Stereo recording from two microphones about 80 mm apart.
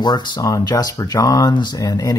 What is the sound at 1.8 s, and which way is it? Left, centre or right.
Speech, left.